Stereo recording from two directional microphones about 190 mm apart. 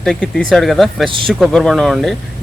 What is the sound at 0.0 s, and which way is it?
Speech, 5° left (ahead or behind).